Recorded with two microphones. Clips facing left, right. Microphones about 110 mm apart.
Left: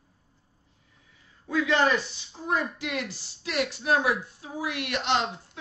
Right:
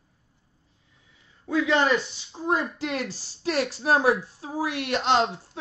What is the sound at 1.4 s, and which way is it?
Speech, 30° right (ahead or behind).